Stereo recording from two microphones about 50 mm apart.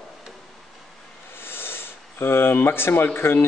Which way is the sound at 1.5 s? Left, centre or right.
Left.